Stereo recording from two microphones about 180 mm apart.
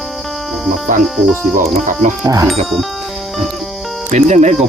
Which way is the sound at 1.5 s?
45° right (ahead or behind).